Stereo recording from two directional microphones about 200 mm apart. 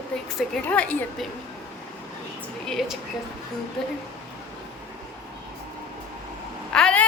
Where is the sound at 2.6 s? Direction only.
Centre (ahead or behind).